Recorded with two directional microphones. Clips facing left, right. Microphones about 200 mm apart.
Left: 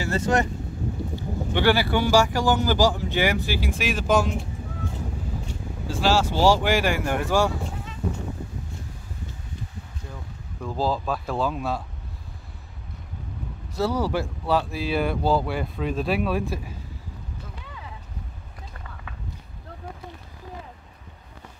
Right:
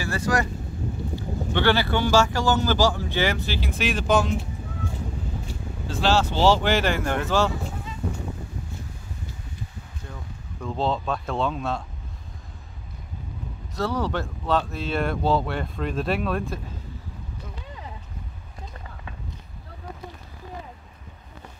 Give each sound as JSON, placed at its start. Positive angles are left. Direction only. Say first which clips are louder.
{"t": 0.0, "sound": "speech", "louder": "left 2 dB", "side_deg": 25}
{"t": 1.1, "sound": "speech", "louder": "right 1 dB", "side_deg": 10}
{"t": 5.9, "sound": "speech", "louder": "even", "side_deg": 10}
{"t": 10.6, "sound": "speech", "louder": "even", "side_deg": 5}
{"t": 13.7, "sound": "speech", "louder": "left 2 dB", "side_deg": 10}